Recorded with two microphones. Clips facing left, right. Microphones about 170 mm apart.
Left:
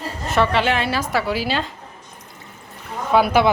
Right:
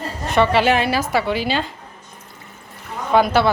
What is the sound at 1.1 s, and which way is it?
Speech, 5° left (ahead or behind).